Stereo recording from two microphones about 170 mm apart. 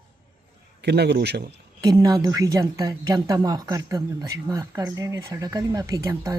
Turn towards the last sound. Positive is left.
turn(degrees=-20)  # may be behind; listen again after turning